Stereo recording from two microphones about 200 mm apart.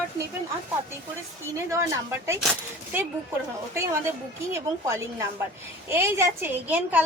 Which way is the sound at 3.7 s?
15° right (ahead or behind).